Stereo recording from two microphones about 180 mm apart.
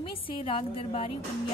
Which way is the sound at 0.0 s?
30° left (ahead or behind).